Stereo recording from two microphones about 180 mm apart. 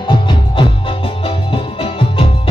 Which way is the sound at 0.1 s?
25° left (ahead or behind).